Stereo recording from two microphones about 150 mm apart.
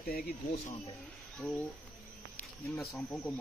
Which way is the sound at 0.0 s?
80° left.